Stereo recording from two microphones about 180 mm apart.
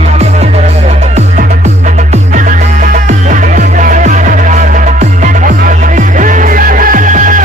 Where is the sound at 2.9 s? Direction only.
45° right (ahead or behind).